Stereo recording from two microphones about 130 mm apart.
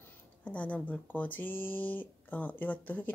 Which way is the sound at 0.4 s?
10° left (ahead or behind).